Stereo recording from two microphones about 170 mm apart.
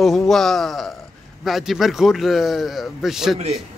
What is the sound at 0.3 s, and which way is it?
A man's voice, centre (ahead or behind).